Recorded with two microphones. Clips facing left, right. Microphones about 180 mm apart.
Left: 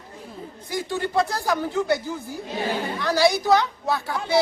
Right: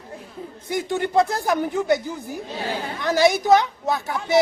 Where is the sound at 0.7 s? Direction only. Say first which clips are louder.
Right 3 dB; 20° right (ahead or behind).